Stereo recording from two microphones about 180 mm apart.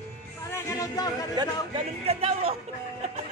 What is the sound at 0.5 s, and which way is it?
Music, 20° left (ahead or behind).